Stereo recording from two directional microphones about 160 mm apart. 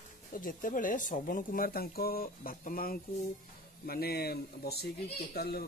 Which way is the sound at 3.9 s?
80° left.